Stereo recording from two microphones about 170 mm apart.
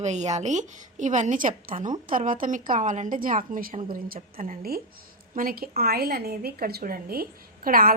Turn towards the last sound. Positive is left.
turn(degrees=-60)  # may be behind; listen again after turning